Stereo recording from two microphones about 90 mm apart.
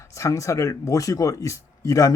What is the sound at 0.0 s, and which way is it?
Speech, 35° left (ahead or behind).